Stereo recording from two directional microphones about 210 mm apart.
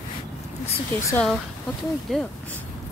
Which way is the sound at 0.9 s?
10° left (ahead or behind).